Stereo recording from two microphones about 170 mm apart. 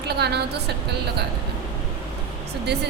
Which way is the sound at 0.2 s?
75° right (ahead or behind).